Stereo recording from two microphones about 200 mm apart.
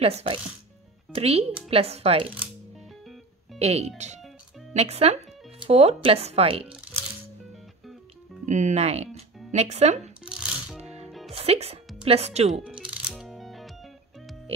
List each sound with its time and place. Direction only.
0.0 s speech: 30° right (ahead or behind)
3.5 s speech: 30° right (ahead or behind)
8.5 s speech: 35° right (ahead or behind)
10.8 s music: 30° right (ahead or behind)
11.1 s music: centre (ahead or behind)
11.3 s speech: 30° right (ahead or behind)
12.6 s music: 5° right (ahead or behind)